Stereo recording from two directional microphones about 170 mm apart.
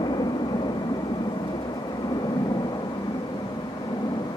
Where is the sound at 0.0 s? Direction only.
25° left (ahead or behind).